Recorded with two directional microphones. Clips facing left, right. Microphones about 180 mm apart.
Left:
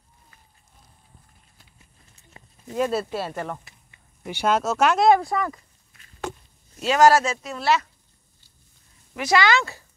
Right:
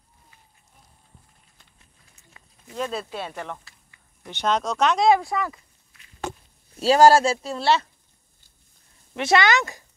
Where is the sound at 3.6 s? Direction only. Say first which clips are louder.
Left 2 dB; 20° left (ahead or behind).